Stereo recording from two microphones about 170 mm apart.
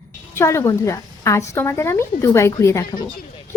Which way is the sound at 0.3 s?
15° left (ahead or behind).